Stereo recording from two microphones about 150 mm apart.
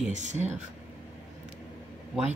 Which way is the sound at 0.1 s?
50° right (ahead or behind).